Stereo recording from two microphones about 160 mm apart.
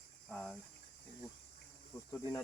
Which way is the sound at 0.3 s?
5° left (ahead or behind).